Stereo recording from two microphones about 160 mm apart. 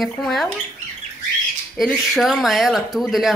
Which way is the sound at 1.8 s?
Centre (ahead or behind).